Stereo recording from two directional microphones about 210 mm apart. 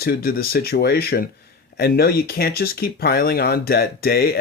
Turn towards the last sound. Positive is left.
turn(degrees=50)  # may be behind; listen again after turning